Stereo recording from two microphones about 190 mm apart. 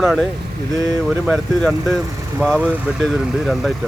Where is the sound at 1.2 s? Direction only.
Centre (ahead or behind).